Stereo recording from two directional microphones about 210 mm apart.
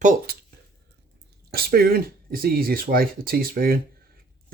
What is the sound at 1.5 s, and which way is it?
Speech, 45° right (ahead or behind).